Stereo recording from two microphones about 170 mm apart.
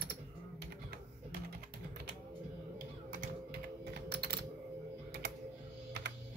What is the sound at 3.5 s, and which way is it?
Typing, 70° right (ahead or behind).